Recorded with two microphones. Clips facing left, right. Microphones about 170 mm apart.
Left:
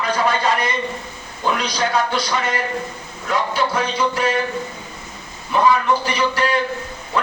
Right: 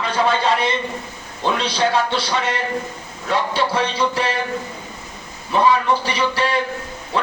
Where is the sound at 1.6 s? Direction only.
30° right (ahead or behind).